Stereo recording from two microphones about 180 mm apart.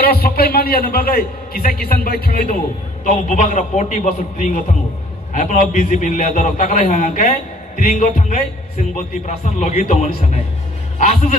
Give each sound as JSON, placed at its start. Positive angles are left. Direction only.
{"t": 0.0, "sound": "a man's voice", "side_deg": 60}
{"t": 3.1, "sound": "a man's voice", "side_deg": 40}